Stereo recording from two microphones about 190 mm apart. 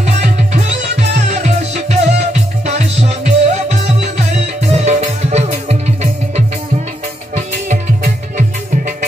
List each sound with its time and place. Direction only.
0.0 s music: 35° right (ahead or behind)